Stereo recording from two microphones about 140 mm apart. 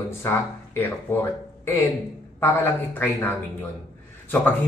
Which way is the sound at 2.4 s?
15° left (ahead or behind).